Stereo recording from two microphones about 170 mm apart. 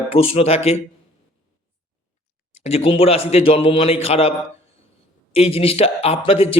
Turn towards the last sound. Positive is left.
turn(degrees=35)  # may be behind; listen again after turning